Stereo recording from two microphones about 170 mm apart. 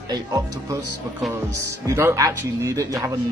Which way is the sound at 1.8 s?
15° right (ahead or behind).